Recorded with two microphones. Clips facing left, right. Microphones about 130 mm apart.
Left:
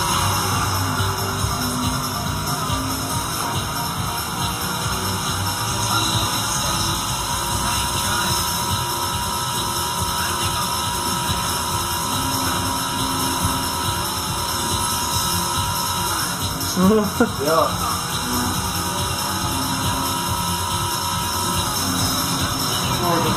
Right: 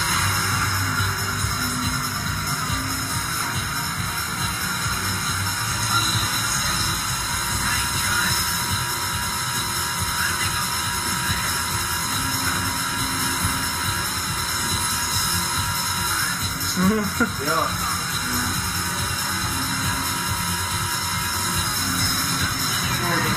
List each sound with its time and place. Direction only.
16.8 s speech: 30° left (ahead or behind)
23.0 s music: 20° left (ahead or behind)